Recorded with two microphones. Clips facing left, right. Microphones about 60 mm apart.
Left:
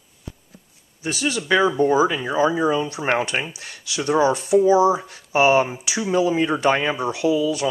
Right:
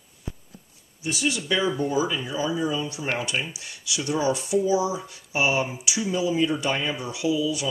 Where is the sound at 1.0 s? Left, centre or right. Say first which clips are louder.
Left 3 dB; left.